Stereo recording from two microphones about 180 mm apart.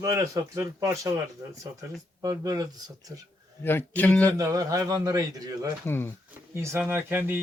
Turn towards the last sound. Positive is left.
turn(degrees=-10)  # may be behind; listen again after turning